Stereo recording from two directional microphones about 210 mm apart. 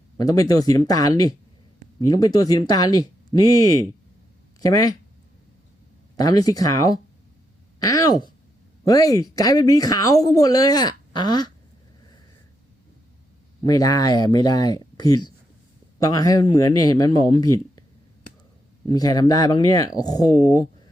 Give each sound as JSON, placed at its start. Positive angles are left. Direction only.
{"t": 0.2, "sound": "speech", "side_deg": 15}
{"t": 4.6, "sound": "speech", "side_deg": 15}
{"t": 6.1, "sound": "speech", "side_deg": 15}
{"t": 13.7, "sound": "speech", "side_deg": 15}
{"t": 16.7, "sound": "speech", "side_deg": 90}
{"t": 17.0, "sound": "speech", "side_deg": 15}
{"t": 18.9, "sound": "speech", "side_deg": 20}